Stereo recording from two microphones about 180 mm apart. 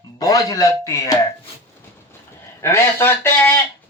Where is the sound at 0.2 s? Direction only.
20° left (ahead or behind).